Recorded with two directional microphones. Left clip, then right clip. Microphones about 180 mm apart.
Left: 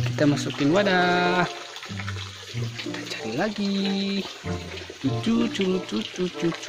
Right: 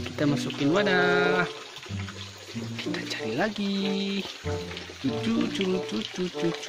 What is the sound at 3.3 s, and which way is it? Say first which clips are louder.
Speech: left 3 dB; centre (ahead or behind).